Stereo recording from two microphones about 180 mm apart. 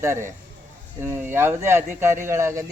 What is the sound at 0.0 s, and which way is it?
A man's voice, 15° right (ahead or behind).